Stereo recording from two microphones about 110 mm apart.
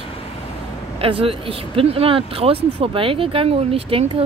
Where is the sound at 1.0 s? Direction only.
60° right (ahead or behind).